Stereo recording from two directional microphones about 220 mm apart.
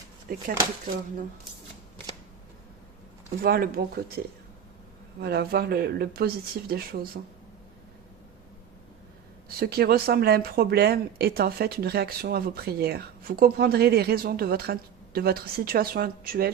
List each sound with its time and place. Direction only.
0.3 s speech: 40° right (ahead or behind)
3.4 s speech: 40° right (ahead or behind)
5.2 s speech: 45° right (ahead or behind)
9.6 s speech: 45° right (ahead or behind)